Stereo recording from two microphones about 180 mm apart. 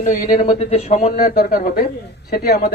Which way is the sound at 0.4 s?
35° left (ahead or behind).